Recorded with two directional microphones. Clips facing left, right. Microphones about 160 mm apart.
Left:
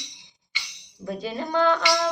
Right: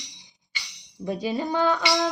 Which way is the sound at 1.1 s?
10° right (ahead or behind).